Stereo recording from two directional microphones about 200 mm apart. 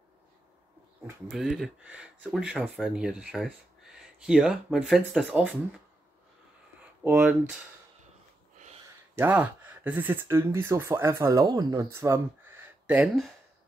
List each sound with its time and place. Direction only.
1.3 s speech: centre (ahead or behind)
7.0 s speech: 5° right (ahead or behind)
9.1 s speech: 10° right (ahead or behind)